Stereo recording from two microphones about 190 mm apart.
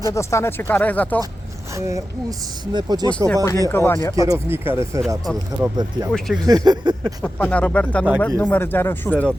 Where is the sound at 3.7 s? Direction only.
10° left (ahead or behind).